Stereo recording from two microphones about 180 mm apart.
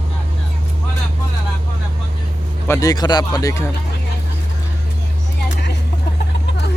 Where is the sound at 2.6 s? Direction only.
15° left (ahead or behind).